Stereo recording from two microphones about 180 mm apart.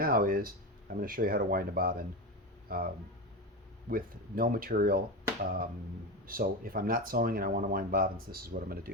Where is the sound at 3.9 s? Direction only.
55° right (ahead or behind).